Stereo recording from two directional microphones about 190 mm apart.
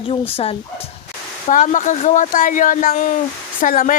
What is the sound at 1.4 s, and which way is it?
Speech, 40° left (ahead or behind).